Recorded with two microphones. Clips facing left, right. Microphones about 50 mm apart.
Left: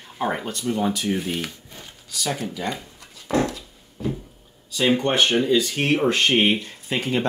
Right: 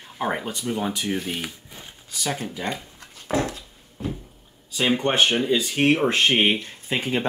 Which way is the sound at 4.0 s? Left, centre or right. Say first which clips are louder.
Left 3 dB; right.